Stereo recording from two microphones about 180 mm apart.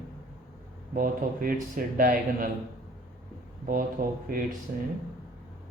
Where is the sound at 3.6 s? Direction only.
50° right (ahead or behind).